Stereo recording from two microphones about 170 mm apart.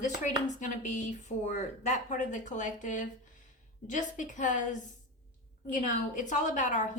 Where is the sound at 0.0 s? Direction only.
45° left (ahead or behind).